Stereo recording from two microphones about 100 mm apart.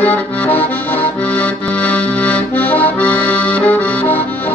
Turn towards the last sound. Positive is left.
turn(degrees=15)  # may be behind; listen again after turning